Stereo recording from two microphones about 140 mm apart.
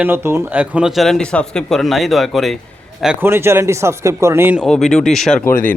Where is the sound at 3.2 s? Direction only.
15° right (ahead or behind).